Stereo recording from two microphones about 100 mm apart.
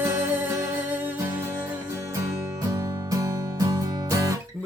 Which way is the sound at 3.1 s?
35° right (ahead or behind).